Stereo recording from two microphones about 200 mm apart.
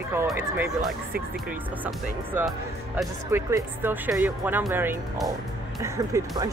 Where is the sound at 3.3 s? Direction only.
10° right (ahead or behind).